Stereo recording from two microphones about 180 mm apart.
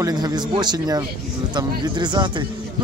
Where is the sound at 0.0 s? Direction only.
20° right (ahead or behind).